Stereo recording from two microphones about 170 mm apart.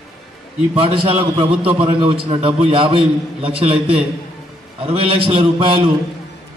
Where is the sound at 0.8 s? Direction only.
30° right (ahead or behind).